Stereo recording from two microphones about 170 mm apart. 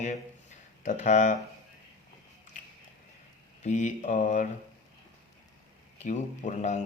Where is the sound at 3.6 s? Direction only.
45° left (ahead or behind).